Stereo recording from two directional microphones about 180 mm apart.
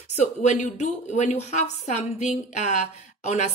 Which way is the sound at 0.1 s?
40° left (ahead or behind).